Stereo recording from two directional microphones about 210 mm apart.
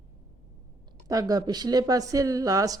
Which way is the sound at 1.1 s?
15° right (ahead or behind).